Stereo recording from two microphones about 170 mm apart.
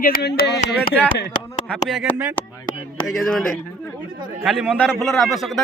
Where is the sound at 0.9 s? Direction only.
90° left.